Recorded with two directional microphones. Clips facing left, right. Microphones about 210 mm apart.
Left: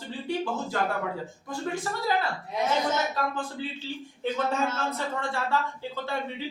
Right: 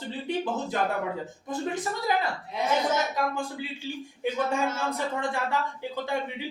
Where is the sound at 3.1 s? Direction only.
10° right (ahead or behind).